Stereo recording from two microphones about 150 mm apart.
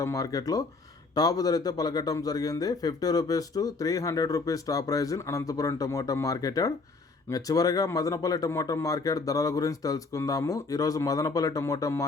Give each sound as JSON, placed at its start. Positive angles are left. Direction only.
{"t": 0.0, "sound": "a man's voice", "side_deg": 20}